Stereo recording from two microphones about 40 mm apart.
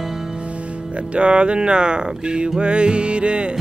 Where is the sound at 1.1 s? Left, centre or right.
Right.